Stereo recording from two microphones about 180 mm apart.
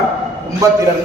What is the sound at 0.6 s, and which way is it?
Speech, 20° right (ahead or behind).